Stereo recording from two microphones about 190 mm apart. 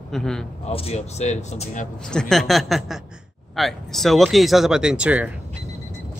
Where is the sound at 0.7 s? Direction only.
30° left (ahead or behind).